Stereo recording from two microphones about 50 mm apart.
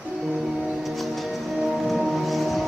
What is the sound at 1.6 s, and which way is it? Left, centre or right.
Music, centre.